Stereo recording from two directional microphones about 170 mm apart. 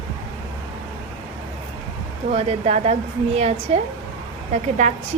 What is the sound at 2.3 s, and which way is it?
A woman's voice, 40° right (ahead or behind).